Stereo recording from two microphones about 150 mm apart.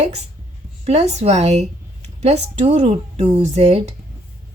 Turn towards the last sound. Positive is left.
turn(degrees=-45)  # may be behind; listen again after turning